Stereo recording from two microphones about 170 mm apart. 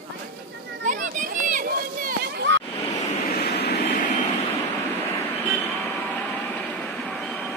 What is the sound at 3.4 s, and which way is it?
Vehicle, 75° left (ahead or behind).